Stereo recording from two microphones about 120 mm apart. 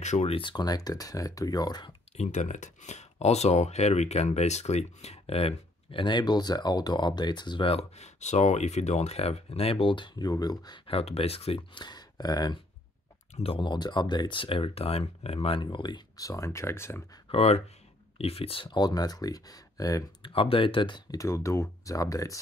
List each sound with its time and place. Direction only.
0.0 s speech: 75° left (ahead or behind)
0.3 s speech: 40° left (ahead or behind)
2.1 s speech: 80° left; by 10.8 s 35° left (ahead or behind)
10.9 s speech: 55° left (ahead or behind)
11.8 s speech: 35° left (ahead or behind)
13.4 s speech: 50° left (ahead or behind); by 17.0 s 20° left (ahead or behind)
17.3 s speech: 55° left (ahead or behind); by 20.0 s 30° left (ahead or behind)
20.2 s speech: 50° left (ahead or behind)
21.2 s speech: 25° left (ahead or behind)